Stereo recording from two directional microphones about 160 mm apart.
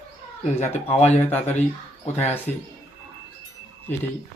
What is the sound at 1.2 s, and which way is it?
Speech, 10° left (ahead or behind).